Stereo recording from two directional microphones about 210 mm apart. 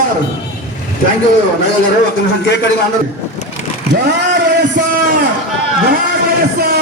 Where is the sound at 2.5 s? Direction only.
55° left (ahead or behind).